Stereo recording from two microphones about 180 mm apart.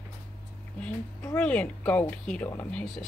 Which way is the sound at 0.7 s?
5° left (ahead or behind).